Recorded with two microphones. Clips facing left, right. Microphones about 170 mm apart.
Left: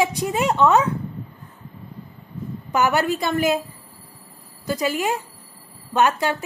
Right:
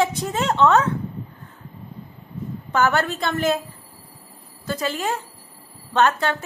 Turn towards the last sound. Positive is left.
turn(degrees=15)  # may be behind; listen again after turning